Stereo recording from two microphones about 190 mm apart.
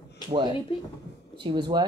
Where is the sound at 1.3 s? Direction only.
25° right (ahead or behind).